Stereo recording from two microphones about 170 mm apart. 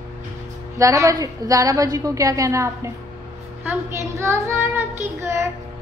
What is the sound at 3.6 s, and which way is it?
Child singing, 15° right (ahead or behind).